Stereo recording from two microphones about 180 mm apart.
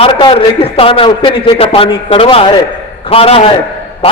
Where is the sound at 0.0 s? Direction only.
30° left (ahead or behind).